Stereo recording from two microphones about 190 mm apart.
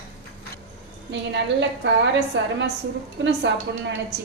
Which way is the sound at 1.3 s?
70° right (ahead or behind).